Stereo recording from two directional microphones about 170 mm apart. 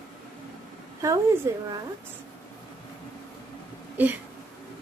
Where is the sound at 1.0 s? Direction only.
20° right (ahead or behind).